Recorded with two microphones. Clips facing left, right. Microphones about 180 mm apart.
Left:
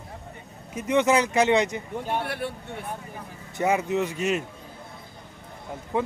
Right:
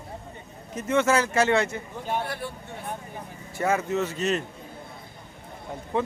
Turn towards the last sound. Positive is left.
turn(degrees=10)  # may be behind; listen again after turning